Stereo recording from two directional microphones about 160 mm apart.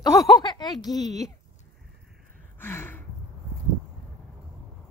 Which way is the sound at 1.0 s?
45° right (ahead or behind).